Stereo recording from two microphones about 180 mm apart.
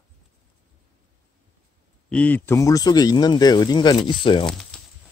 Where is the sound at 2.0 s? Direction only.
5° left (ahead or behind); by 4.4 s 30° left (ahead or behind).